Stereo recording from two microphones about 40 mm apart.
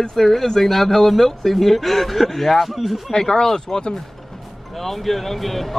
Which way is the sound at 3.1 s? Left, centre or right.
Centre.